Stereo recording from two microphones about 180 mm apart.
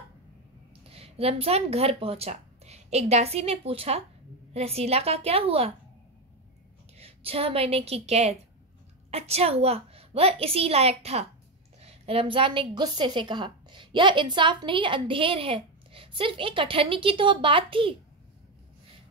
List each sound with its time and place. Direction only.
0.8 s a woman's voice: 30° right (ahead or behind)
7.0 s a woman's voice: 30° right (ahead or behind)